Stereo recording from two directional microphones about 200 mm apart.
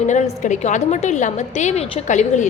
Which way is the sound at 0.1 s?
35° left (ahead or behind).